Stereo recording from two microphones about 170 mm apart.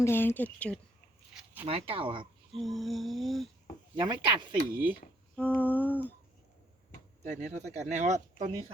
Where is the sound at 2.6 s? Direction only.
Centre (ahead or behind).